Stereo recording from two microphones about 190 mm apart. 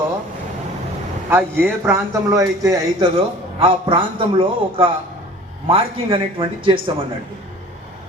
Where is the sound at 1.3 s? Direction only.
10° right (ahead or behind).